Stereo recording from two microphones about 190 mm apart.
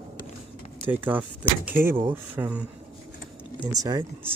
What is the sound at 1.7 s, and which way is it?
Speech, 10° right (ahead or behind).